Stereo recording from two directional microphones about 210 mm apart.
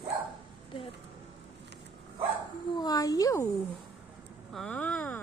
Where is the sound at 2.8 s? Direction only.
20° left (ahead or behind).